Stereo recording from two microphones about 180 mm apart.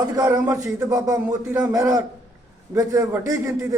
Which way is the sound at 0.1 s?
20° right (ahead or behind).